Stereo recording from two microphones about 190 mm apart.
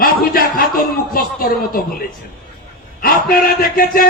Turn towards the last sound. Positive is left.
turn(degrees=50)  # may be behind; listen again after turning